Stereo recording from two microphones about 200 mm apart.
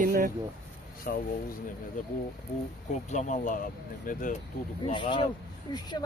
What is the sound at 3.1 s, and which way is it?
Speech, 40° left (ahead or behind).